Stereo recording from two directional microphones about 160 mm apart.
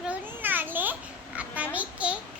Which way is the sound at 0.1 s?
10° right (ahead or behind).